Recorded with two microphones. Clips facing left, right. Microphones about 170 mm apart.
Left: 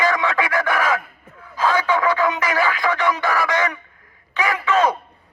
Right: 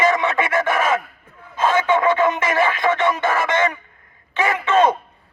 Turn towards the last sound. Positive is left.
turn(degrees=-25)  # may be behind; listen again after turning